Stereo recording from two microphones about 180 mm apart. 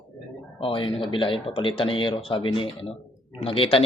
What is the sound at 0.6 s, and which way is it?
Speech, 30° left (ahead or behind).